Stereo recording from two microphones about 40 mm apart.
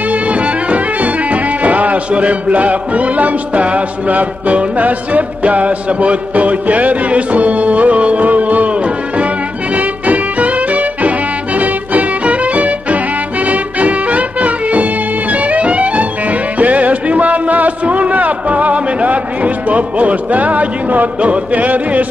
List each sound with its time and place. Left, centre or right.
0.7 s music: right
9.8 s music: right